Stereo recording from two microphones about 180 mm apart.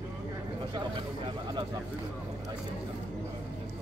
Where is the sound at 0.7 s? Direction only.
25° right (ahead or behind).